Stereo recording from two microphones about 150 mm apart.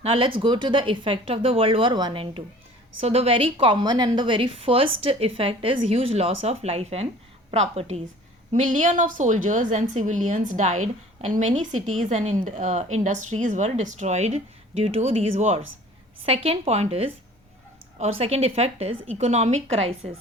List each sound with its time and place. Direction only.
0.0 s a woman's voice: 35° right (ahead or behind)
8.5 s a woman's voice: 55° right (ahead or behind)